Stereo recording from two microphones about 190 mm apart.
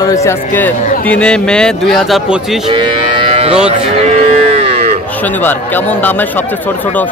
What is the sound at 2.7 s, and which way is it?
Moo, 30° right (ahead or behind).